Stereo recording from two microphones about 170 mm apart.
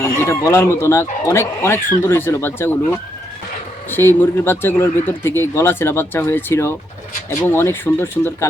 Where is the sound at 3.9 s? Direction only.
15° left (ahead or behind).